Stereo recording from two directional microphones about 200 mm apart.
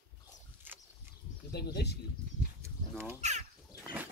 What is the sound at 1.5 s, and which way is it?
Speech, 55° left (ahead or behind).